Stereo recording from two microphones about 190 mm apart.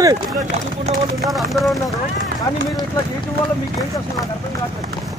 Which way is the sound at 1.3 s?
Centre (ahead or behind).